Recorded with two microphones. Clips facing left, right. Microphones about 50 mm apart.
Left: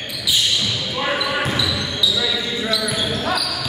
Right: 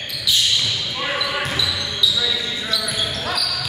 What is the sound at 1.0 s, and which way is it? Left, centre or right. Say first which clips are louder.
Basketball bounce: left 3 dB; centre.